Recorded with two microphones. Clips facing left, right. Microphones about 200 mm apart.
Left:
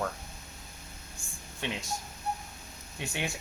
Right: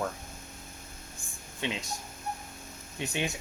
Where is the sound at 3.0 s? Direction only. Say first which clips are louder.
Right 3 dB; 20° right (ahead or behind).